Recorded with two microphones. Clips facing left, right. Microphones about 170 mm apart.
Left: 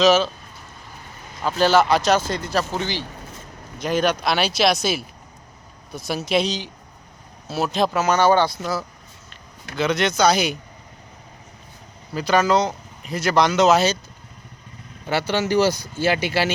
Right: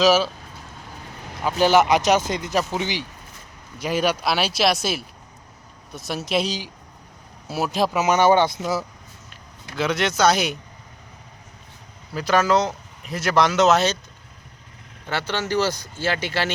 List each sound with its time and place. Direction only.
0.0 s speech: 10° right (ahead or behind)
1.5 s speech: 15° right (ahead or behind)
8.0 s speech: 20° right (ahead or behind)
9.3 s speech: 5° right (ahead or behind)
12.1 s speech: centre (ahead or behind)
15.0 s speech: 10° left (ahead or behind)